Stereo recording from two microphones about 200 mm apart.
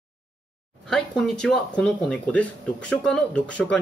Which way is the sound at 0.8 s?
Centre (ahead or behind).